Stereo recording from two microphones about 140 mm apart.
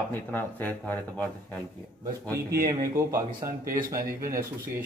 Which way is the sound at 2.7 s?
25° right (ahead or behind).